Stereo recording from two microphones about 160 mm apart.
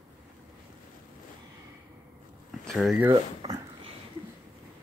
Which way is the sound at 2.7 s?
Centre (ahead or behind).